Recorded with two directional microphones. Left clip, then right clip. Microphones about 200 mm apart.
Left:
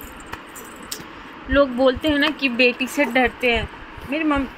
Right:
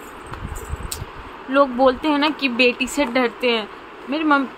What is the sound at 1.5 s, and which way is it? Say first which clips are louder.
A woman's voice: right 1 dB; 15° right (ahead or behind).